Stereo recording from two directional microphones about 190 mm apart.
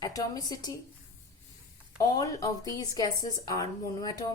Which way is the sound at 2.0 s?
20° left (ahead or behind).